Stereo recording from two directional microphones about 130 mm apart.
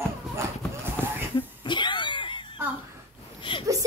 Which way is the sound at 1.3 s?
35° left (ahead or behind).